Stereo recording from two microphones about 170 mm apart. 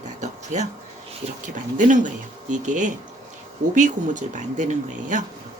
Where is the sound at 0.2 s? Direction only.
45° right (ahead or behind).